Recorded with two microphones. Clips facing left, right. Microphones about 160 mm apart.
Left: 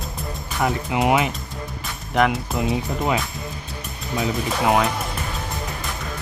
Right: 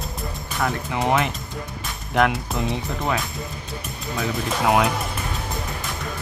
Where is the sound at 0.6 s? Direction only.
15° left (ahead or behind).